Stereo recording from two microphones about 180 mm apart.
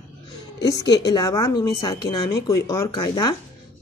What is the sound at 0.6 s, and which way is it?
A woman's voice, 20° left (ahead or behind).